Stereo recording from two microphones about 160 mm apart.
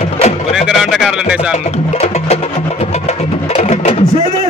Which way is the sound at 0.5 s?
Centre (ahead or behind).